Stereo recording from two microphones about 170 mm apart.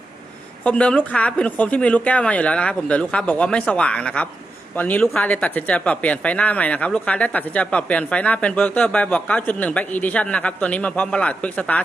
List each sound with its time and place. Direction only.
0.6 s speech: 5° left (ahead or behind)